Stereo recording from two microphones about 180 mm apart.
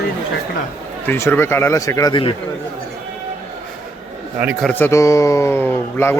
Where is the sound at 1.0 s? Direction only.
10° left (ahead or behind).